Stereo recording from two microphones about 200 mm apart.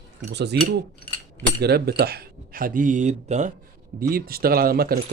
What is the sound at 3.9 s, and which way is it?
Speech, 50° right (ahead or behind).